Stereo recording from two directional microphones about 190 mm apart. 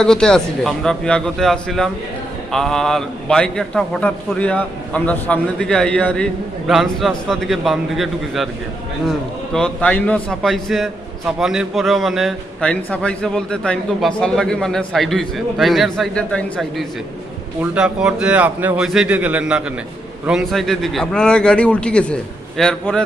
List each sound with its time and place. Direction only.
0.0 s a man's voice: 5° left (ahead or behind)
9.5 s a man's voice: 5° left (ahead or behind)